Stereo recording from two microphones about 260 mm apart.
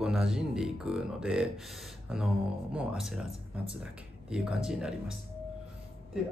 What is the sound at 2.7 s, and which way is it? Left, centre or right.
Speech, centre.